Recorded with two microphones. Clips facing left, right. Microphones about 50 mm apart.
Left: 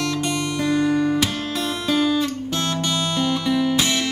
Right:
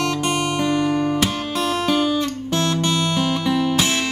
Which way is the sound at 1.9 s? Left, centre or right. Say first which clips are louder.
Even; right.